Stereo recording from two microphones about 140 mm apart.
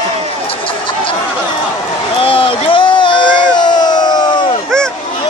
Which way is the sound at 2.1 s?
40° left (ahead or behind).